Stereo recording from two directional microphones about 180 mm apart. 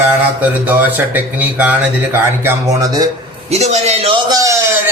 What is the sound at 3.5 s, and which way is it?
Speech, 35° right (ahead or behind).